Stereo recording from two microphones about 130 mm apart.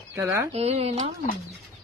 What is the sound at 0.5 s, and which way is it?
Speech, 50° right (ahead or behind).